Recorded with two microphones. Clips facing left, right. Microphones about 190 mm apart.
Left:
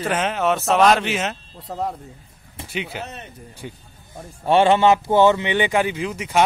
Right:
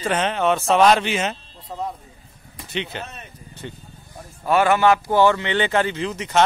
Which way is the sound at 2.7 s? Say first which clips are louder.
Even; 10° left (ahead or behind).